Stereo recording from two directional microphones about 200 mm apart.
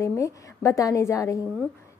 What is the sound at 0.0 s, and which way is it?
A woman's voice, 15° left (ahead or behind).